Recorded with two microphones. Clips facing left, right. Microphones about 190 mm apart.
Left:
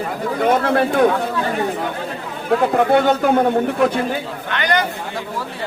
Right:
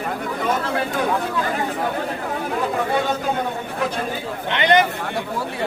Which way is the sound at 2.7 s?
65° left (ahead or behind).